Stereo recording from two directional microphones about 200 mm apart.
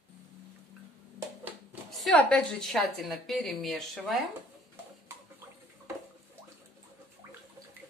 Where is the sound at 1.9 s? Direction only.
5° left (ahead or behind).